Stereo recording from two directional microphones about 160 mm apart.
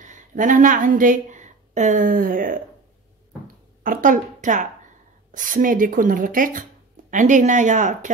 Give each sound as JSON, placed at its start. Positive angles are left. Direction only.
{"t": 0.0, "sound": "a woman's voice", "side_deg": -50}
{"t": 3.8, "sound": "speech", "side_deg": -55}